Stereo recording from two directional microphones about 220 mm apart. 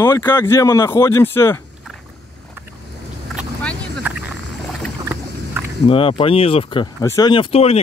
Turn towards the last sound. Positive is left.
turn(degrees=25)  # may be behind; listen again after turning